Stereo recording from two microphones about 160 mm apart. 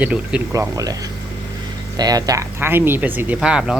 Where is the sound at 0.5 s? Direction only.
20° right (ahead or behind).